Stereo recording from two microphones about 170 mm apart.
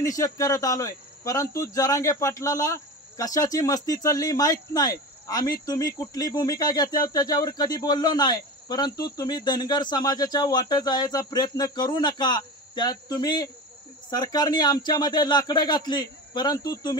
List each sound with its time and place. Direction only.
0.0 s speech: 20° left (ahead or behind)